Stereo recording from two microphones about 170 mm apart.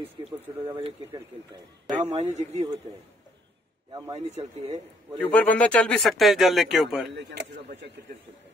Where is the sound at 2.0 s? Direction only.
40° right (ahead or behind).